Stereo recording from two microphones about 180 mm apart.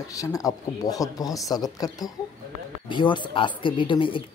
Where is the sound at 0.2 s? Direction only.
20° left (ahead or behind).